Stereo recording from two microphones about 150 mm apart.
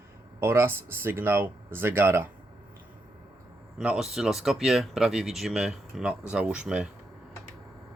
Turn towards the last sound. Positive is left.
turn(degrees=-5)  # may be behind; listen again after turning